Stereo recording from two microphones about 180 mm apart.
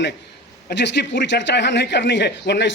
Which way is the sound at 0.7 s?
70° left (ahead or behind).